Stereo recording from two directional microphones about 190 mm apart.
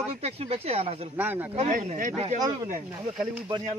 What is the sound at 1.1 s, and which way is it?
Speech, 10° right (ahead or behind).